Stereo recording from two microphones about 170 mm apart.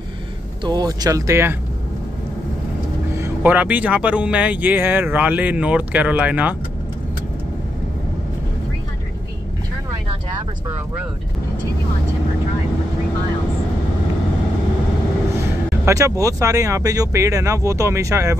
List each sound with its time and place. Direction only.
0.7 s speech: 25° right (ahead or behind)
3.2 s speech: 10° right (ahead or behind)
15.8 s speech: 15° right (ahead or behind)